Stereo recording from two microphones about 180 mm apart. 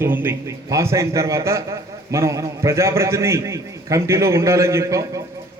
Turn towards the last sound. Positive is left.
turn(degrees=-15)  # may be behind; listen again after turning